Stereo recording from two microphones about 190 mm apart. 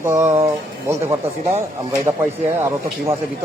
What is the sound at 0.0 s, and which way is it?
Speech, 15° right (ahead or behind).